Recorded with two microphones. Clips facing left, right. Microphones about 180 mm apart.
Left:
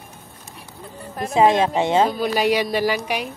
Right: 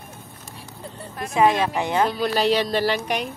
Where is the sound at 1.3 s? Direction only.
25° left (ahead or behind).